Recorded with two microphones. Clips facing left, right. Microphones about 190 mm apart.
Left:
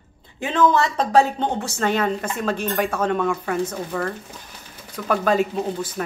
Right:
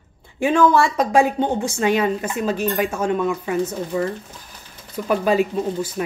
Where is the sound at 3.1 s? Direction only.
50° left (ahead or behind).